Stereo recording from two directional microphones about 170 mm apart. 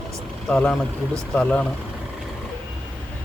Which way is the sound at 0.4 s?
5° left (ahead or behind).